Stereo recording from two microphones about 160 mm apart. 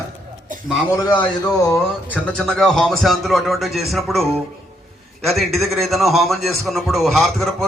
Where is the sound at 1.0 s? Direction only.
25° left (ahead or behind).